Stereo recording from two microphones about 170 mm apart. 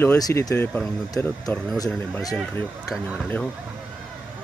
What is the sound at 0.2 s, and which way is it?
Speech, 20° left (ahead or behind).